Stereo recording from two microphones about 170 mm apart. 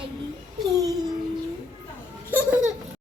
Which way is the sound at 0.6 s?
20° right (ahead or behind).